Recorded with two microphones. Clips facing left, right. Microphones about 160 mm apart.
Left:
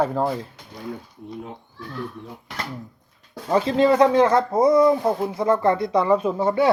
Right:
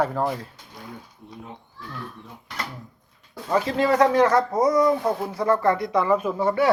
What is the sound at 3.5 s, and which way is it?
Speech, 25° left (ahead or behind).